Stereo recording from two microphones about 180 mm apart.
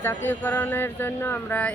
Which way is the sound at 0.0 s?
10° left (ahead or behind).